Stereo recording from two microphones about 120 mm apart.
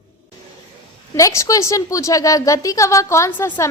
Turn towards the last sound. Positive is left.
turn(degrees=25)  # may be behind; listen again after turning